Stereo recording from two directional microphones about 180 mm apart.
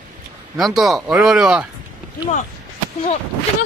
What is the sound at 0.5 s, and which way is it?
Speech, centre (ahead or behind).